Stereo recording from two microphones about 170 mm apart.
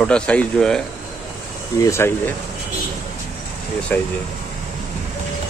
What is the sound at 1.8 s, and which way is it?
Speech, 15° left (ahead or behind).